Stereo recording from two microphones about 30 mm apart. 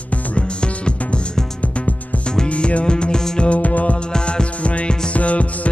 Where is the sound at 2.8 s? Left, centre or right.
Left.